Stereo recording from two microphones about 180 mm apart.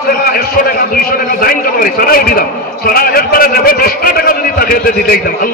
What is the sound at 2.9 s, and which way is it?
A man's voice, 55° left (ahead or behind).